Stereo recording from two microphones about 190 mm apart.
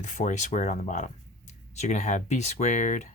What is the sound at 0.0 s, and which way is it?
Speech, 40° left (ahead or behind).